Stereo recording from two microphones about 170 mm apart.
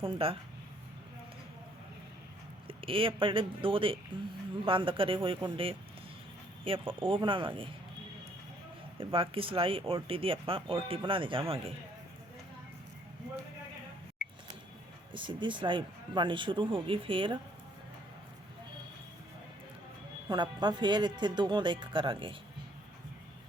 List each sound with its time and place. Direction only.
0.0 s speech: 30° right (ahead or behind)
2.6 s speech: 30° right (ahead or behind)
9.0 s speech: 30° right (ahead or behind)
15.1 s speech: 30° right (ahead or behind)
20.2 s speech: 25° right (ahead or behind)